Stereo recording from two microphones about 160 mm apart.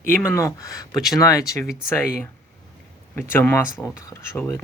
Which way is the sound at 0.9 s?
Centre (ahead or behind).